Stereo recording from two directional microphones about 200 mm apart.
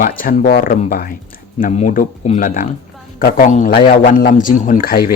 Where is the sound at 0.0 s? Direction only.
45° left (ahead or behind).